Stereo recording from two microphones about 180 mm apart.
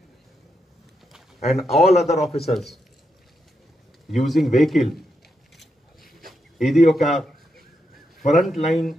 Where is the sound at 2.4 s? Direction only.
Centre (ahead or behind).